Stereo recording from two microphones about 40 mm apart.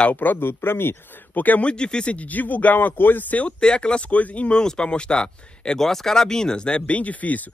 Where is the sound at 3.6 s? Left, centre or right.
Left.